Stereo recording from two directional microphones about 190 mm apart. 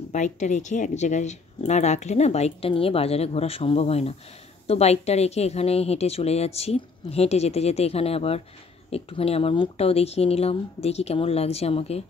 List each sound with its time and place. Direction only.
0.1 s speech: 40° left (ahead or behind)